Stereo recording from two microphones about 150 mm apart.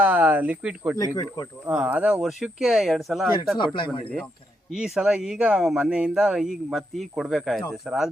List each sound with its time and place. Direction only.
0.0 s speech: 10° right (ahead or behind)
0.9 s speech: 25° left (ahead or behind)
1.6 s speech: 15° right (ahead or behind)
4.7 s speech: centre (ahead or behind)